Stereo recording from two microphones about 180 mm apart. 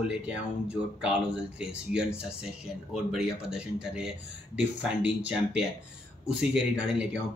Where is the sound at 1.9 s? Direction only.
5° right (ahead or behind).